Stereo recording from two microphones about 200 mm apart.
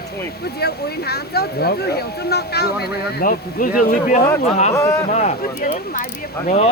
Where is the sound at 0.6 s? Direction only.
55° left (ahead or behind).